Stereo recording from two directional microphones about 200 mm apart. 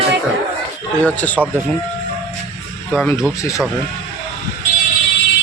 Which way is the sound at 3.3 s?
15° left (ahead or behind).